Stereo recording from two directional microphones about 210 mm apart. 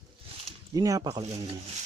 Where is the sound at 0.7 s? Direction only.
15° right (ahead or behind).